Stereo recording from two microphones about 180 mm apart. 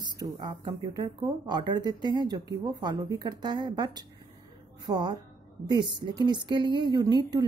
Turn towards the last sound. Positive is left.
turn(degrees=-25)  # may be behind; listen again after turning